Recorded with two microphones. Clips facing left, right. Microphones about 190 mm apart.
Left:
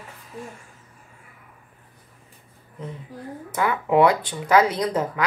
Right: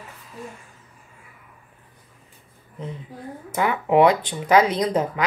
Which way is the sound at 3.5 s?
20° right (ahead or behind).